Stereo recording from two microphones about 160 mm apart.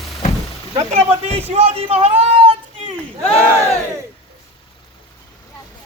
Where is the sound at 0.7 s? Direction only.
40° right (ahead or behind).